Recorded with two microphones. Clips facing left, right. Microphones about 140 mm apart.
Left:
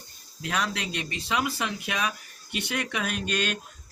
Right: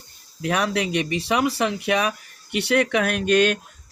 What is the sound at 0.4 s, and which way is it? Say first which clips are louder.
Speech: right 7 dB; 60° right (ahead or behind).